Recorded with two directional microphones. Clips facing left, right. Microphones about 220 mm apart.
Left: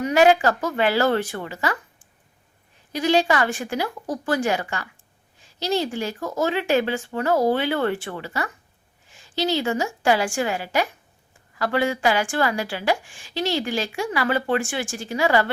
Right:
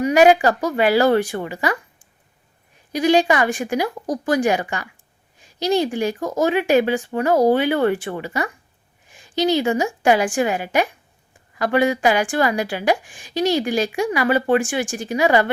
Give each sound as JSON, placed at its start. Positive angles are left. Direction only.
{"t": 0.0, "sound": "a woman's voice", "side_deg": -15}
{"t": 2.9, "sound": "a woman's voice", "side_deg": -15}